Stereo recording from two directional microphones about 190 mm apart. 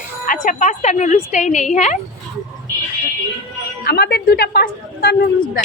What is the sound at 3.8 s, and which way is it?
A woman's voice, 55° left (ahead or behind).